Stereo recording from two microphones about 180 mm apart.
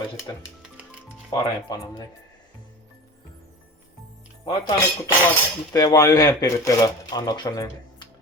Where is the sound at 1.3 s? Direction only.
25° left (ahead or behind).